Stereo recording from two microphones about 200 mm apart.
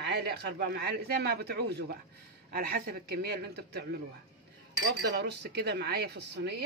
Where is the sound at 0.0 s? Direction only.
55° right (ahead or behind).